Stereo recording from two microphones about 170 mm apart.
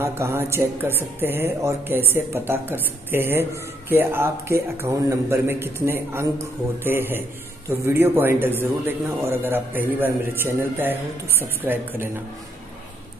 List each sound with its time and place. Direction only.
0.0 s a man's voice: 15° right (ahead or behind)